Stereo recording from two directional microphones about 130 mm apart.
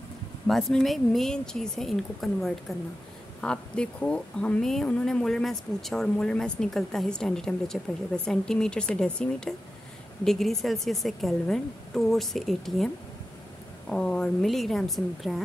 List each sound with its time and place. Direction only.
0.5 s speech: centre (ahead or behind)